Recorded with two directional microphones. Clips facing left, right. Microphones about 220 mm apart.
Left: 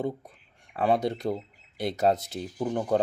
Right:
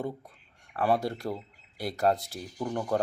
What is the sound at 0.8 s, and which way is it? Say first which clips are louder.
Speech: left 2 dB; 20° left (ahead or behind).